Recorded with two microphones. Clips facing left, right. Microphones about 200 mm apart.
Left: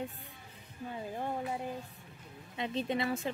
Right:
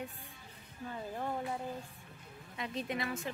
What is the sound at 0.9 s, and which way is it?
Speech, 15° left (ahead or behind).